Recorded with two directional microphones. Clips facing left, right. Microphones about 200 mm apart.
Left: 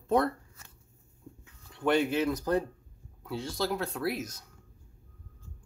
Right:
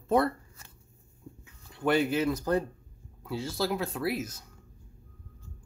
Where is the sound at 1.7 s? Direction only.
5° right (ahead or behind).